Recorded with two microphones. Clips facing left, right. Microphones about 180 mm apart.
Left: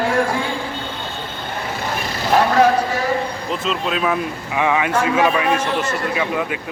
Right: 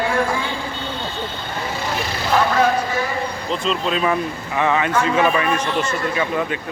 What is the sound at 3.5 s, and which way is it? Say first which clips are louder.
Speech: right 2 dB; 5° left (ahead or behind).